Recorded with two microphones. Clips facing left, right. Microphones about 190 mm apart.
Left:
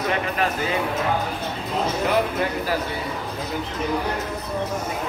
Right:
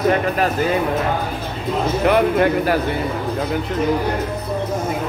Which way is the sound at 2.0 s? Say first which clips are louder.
Right 10 dB; 60° right (ahead or behind).